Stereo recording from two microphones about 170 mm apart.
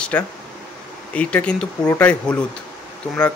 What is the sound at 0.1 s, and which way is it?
A man's voice, 10° left (ahead or behind).